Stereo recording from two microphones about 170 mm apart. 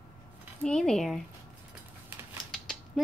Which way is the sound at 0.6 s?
5° left (ahead or behind).